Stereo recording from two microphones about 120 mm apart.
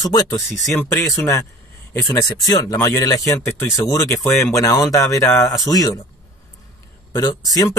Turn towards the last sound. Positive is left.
turn(degrees=30)  # may be behind; listen again after turning